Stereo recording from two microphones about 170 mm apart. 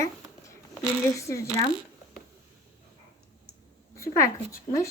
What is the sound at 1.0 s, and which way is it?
Speech, 15° left (ahead or behind).